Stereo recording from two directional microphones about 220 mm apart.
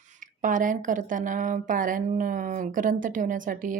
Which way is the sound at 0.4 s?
35° right (ahead or behind).